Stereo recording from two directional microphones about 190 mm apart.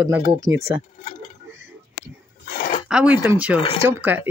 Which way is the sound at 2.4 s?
35° left (ahead or behind).